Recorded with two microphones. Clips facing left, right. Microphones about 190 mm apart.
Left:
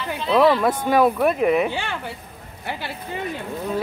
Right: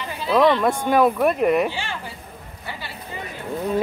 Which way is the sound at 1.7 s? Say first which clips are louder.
Left 3 dB; 60° left (ahead or behind).